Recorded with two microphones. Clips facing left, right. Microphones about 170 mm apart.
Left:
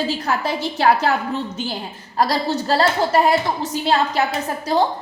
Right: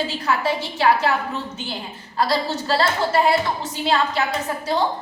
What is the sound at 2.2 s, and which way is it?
A woman's voice, 45° left (ahead or behind).